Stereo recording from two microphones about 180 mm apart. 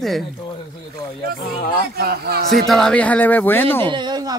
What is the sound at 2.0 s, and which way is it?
Speech, 60° right (ahead or behind).